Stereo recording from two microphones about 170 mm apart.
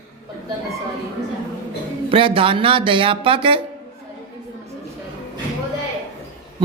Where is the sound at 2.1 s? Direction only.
30° right (ahead or behind).